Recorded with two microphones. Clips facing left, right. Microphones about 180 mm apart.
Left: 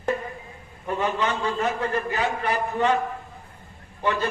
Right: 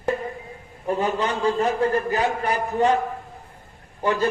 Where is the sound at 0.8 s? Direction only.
35° right (ahead or behind).